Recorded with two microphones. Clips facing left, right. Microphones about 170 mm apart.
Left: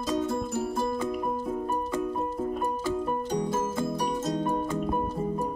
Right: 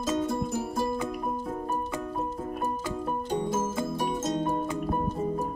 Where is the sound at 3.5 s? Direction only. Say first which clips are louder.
Left 1 dB; 5° right (ahead or behind).